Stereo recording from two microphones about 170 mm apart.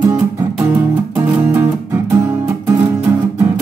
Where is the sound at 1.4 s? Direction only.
15° right (ahead or behind).